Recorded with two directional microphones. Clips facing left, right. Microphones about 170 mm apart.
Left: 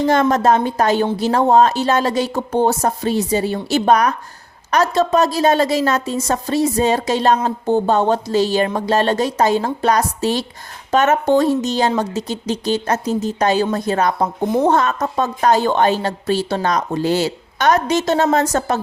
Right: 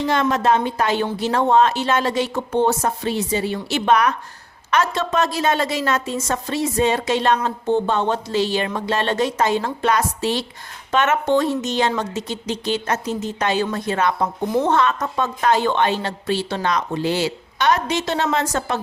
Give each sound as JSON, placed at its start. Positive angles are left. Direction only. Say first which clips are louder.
{"t": 0.0, "sound": "a woman's voice", "louder": "left 4 dB", "side_deg": 45}